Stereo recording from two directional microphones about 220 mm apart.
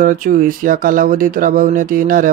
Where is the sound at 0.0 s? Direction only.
35° right (ahead or behind).